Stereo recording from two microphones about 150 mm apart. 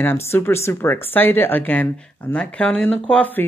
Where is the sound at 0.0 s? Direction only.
15° left (ahead or behind).